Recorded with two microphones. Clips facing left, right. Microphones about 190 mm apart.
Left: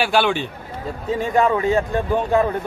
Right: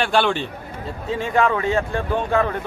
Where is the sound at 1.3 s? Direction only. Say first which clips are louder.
Left 2 dB; 15° left (ahead or behind).